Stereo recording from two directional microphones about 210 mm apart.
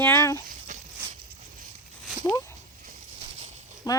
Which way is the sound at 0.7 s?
35° right (ahead or behind).